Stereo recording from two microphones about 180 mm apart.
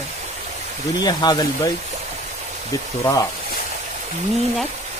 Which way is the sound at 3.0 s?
20° left (ahead or behind).